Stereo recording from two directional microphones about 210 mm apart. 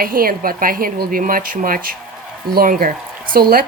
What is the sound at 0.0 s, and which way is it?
A woman's voice, 40° right (ahead or behind).